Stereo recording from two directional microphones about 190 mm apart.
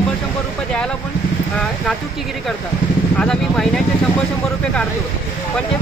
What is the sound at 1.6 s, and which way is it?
Speech, centre (ahead or behind).